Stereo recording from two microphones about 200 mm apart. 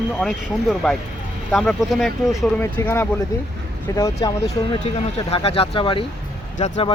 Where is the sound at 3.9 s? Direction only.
15° left (ahead or behind).